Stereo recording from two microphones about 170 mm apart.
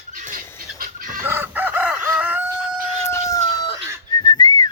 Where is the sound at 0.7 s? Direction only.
55° right (ahead or behind).